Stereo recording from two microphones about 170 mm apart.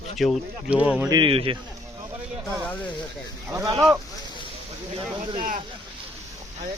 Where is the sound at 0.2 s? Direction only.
5° right (ahead or behind).